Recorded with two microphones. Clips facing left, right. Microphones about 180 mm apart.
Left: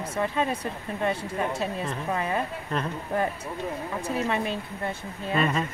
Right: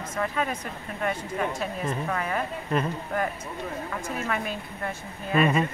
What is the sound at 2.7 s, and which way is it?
Speech, 5° right (ahead or behind).